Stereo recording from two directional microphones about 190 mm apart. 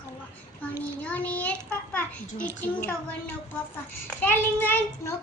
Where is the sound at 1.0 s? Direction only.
10° left (ahead or behind).